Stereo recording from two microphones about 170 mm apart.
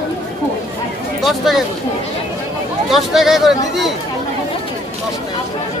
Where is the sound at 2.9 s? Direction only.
Centre (ahead or behind).